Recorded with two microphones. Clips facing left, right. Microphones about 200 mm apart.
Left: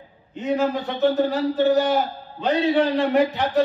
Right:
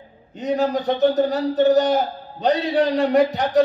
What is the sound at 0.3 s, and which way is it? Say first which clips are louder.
A man's voice: right 1 dB; 40° right (ahead or behind).